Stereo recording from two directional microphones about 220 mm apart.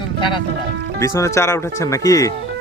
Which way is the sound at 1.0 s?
15° left (ahead or behind).